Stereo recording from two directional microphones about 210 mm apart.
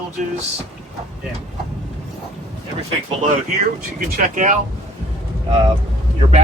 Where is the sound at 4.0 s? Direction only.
40° right (ahead or behind).